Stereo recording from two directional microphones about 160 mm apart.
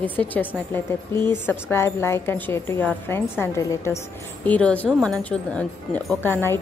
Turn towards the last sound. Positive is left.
turn(degrees=10)  # may be behind; listen again after turning